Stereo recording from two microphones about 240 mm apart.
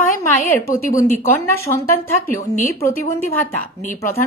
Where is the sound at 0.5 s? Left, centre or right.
Centre.